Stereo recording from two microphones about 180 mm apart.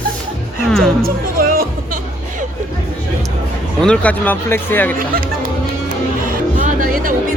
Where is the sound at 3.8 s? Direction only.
5° left (ahead or behind).